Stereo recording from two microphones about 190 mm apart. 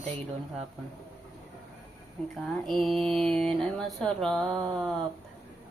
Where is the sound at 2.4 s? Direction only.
Centre (ahead or behind).